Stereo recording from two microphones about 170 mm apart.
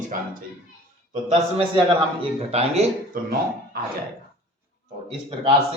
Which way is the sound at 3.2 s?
55° right (ahead or behind).